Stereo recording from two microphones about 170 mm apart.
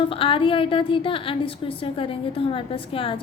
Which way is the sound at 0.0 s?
30° left (ahead or behind).